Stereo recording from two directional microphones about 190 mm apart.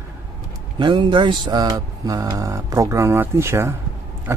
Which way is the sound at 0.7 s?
25° right (ahead or behind).